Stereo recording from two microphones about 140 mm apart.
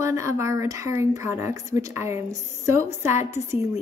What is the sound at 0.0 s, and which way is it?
Speech, 20° right (ahead or behind).